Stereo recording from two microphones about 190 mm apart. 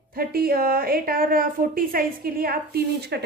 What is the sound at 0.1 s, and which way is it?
A woman's voice, 50° right (ahead or behind).